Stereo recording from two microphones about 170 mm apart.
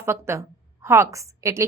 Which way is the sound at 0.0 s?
15° right (ahead or behind).